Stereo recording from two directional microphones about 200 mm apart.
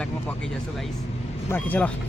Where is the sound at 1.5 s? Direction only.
10° left (ahead or behind).